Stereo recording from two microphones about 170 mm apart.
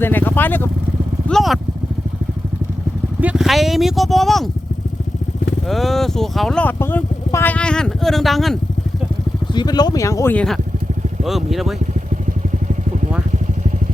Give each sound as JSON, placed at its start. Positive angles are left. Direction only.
{"t": 0.0, "sound": "speech", "side_deg": 10}
{"t": 1.3, "sound": "speech", "side_deg": 0}
{"t": 3.2, "sound": "speech", "side_deg": -5}
{"t": 5.6, "sound": "speech", "side_deg": 0}
{"t": 9.6, "sound": "speech", "side_deg": 25}
{"t": 10.3, "sound": "speech", "side_deg": 5}